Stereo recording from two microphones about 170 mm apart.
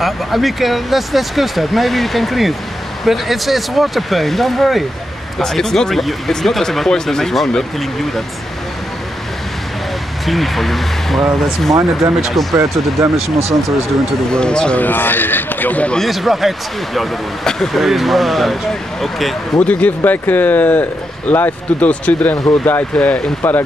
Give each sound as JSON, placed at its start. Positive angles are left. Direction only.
{"t": 0.0, "sound": "speech", "side_deg": 0}
{"t": 10.2, "sound": "speech", "side_deg": 0}
{"t": 12.5, "sound": "speech", "side_deg": -15}
{"t": 14.3, "sound": "speech", "side_deg": 5}